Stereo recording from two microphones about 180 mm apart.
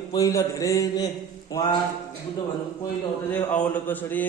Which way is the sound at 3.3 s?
10° left (ahead or behind).